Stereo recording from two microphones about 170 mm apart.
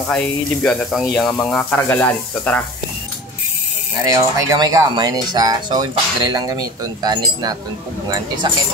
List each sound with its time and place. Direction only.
0.1 s speech: 5° left (ahead or behind)
4.0 s speech: 20° right (ahead or behind)